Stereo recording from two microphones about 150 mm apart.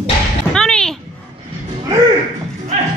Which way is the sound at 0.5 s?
5° left (ahead or behind).